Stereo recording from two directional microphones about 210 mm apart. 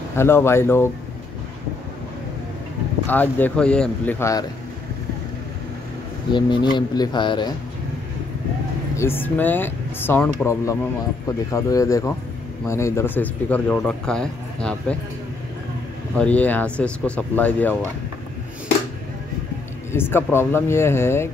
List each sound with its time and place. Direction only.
0.1 s speech: 10° left (ahead or behind)
3.1 s speech: 10° left (ahead or behind)
6.3 s speech: 20° left (ahead or behind)
8.9 s speech: 10° left (ahead or behind)
16.2 s speech: 5° left (ahead or behind)
19.9 s speech: 10° left (ahead or behind)